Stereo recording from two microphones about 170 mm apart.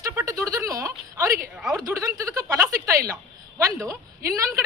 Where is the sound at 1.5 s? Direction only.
5° right (ahead or behind).